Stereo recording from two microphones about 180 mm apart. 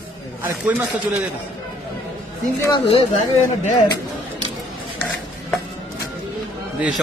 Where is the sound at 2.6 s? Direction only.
25° left (ahead or behind).